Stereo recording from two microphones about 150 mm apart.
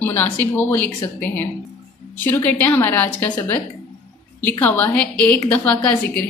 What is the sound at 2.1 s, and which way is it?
A woman's voice, 10° left (ahead or behind).